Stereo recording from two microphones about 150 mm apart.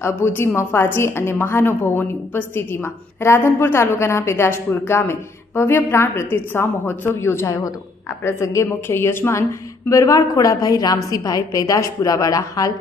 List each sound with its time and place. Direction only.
0.0 s a woman's voice: 15° left (ahead or behind)